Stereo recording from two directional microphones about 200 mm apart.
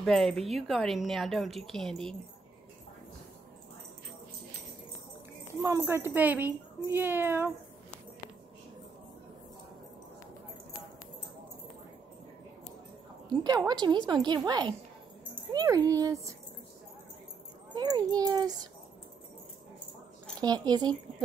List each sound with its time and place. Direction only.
0.0 s a woman's voice: centre (ahead or behind)
5.6 s speech: 15° right (ahead or behind)
13.3 s a woman's voice: 20° right (ahead or behind)
17.7 s a woman's voice: 20° right (ahead or behind)
20.3 s a woman's voice: 20° right (ahead or behind)